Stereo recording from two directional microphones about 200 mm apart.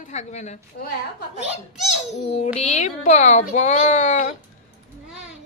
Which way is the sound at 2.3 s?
30° left (ahead or behind).